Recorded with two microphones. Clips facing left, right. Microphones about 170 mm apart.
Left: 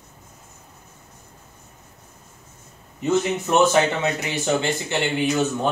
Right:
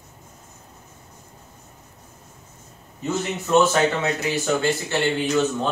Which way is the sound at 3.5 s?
20° left (ahead or behind).